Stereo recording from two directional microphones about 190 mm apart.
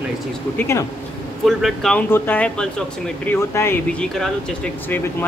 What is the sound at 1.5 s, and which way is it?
A man's voice, centre (ahead or behind).